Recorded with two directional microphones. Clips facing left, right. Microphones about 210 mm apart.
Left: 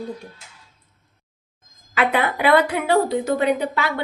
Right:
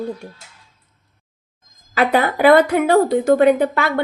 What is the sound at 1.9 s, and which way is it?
A woman's voice, 40° right (ahead or behind).